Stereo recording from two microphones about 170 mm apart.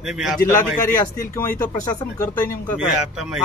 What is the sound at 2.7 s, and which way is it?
Speech, 5° right (ahead or behind).